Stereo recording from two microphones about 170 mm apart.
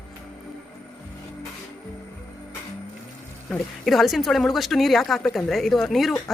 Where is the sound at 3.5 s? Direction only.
Centre (ahead or behind).